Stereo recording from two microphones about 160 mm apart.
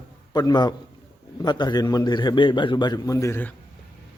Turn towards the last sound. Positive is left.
turn(degrees=15)  # may be behind; listen again after turning